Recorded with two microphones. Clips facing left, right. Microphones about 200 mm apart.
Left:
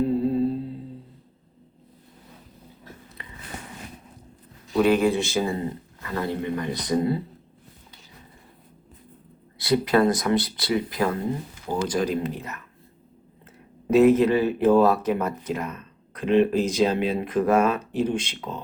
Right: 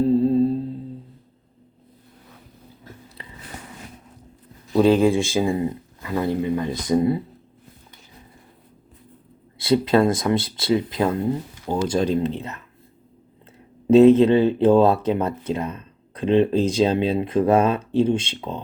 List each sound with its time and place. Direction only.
3.2 s biting: 30° right (ahead or behind)
4.7 s speech: 30° right (ahead or behind)
5.0 s speech: 15° right (ahead or behind)
9.6 s speech: 25° right (ahead or behind)
13.8 s speech: 25° right (ahead or behind)